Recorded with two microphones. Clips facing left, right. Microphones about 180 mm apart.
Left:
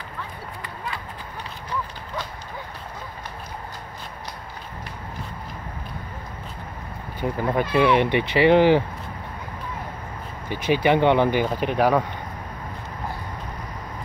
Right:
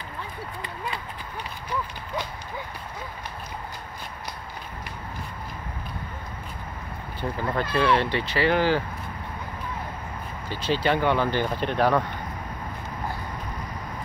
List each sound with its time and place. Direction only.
7.3 s speech: 15° left (ahead or behind)
10.5 s speech: 15° left (ahead or behind)
11.3 s speech: 10° left (ahead or behind)